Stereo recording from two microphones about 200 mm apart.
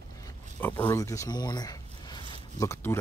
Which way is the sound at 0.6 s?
10° left (ahead or behind).